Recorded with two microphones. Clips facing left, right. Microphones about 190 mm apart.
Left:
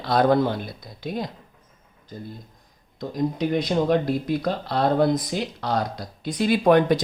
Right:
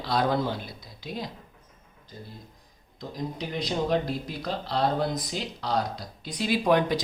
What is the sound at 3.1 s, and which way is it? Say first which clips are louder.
Speech: left 9 dB; 55° left (ahead or behind).